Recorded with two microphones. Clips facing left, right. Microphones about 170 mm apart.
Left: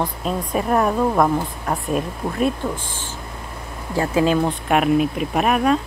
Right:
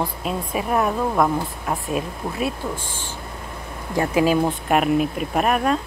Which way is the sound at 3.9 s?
20° right (ahead or behind).